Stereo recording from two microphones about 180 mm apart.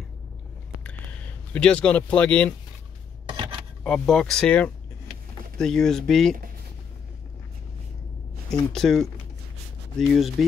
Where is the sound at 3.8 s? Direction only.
5° left (ahead or behind).